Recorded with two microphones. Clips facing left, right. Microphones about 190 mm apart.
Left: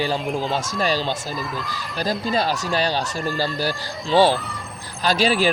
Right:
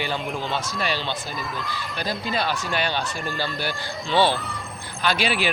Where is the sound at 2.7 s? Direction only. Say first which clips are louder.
Left 3 dB; 35° left (ahead or behind).